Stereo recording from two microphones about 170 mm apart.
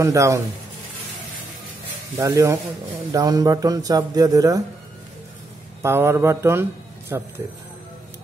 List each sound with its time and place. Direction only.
0.0 s speech: 20° right (ahead or behind)
2.1 s speech: 20° right (ahead or behind)
5.8 s speech: 15° right (ahead or behind)